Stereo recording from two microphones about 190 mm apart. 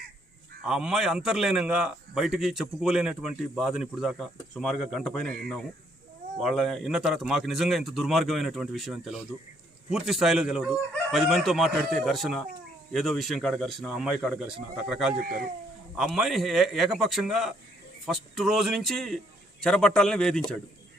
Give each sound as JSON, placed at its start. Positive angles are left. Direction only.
{"t": 0.6, "sound": "a man's voice", "side_deg": -5}
{"t": 15.2, "sound": "speech", "side_deg": -50}
{"t": 16.0, "sound": "a man's voice", "side_deg": 0}